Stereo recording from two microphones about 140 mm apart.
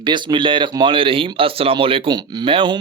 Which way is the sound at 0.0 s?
35° right (ahead or behind).